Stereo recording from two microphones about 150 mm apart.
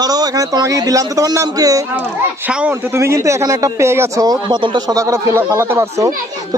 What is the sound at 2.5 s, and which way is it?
Speech, 5° right (ahead or behind).